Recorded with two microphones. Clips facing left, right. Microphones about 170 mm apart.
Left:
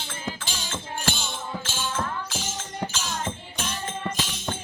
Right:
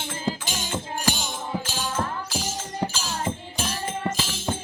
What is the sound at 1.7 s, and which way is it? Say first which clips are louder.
Music: left 1 dB; 40° right (ahead or behind).